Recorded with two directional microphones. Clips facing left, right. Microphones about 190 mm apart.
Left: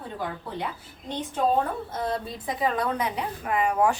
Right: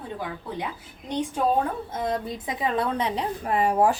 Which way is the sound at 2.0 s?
20° right (ahead or behind).